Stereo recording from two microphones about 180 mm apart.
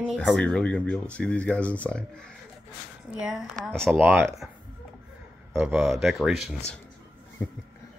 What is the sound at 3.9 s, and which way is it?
Speech, 10° right (ahead or behind).